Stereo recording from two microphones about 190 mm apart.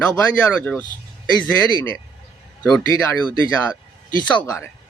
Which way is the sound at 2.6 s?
5° left (ahead or behind).